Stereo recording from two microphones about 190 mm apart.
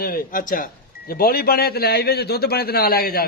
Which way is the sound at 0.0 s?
50° left (ahead or behind).